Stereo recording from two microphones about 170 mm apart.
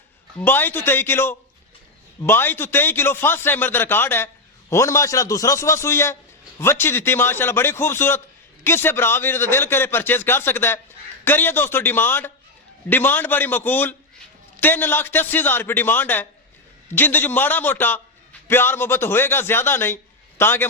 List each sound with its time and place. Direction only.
0.3 s a man's voice: 10° left (ahead or behind)